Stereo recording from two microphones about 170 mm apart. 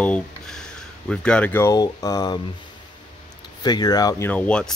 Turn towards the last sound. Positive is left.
turn(degrees=5)  # may be behind; listen again after turning